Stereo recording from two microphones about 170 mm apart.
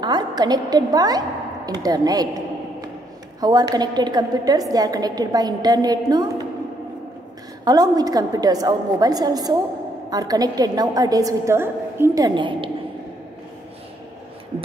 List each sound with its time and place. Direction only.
0.0 s a woman's voice: 25° right (ahead or behind)
3.3 s a woman's voice: 25° right (ahead or behind)
7.6 s a woman's voice: 20° right (ahead or behind)
12.4 s a woman's voice: 30° right (ahead or behind)